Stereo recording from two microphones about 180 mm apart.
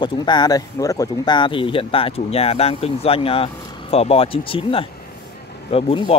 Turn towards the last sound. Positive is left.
turn(degrees=25)  # may be behind; listen again after turning